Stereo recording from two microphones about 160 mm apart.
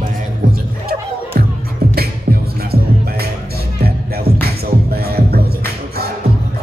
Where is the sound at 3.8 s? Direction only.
75° right (ahead or behind).